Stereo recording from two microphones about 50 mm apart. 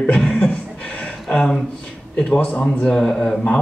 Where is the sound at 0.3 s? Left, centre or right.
Left.